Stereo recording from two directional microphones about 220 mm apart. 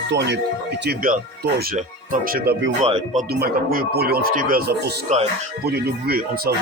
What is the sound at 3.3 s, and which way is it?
Speech, 45° right (ahead or behind).